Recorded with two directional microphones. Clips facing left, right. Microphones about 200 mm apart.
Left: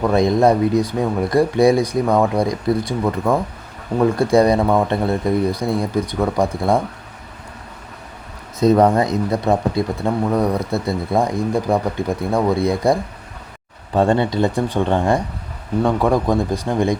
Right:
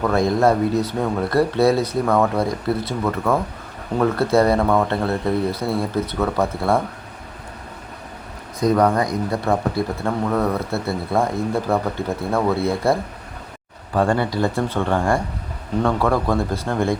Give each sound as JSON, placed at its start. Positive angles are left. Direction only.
{"t": 0.0, "sound": "speech", "side_deg": 15}
{"t": 8.5, "sound": "speech", "side_deg": 25}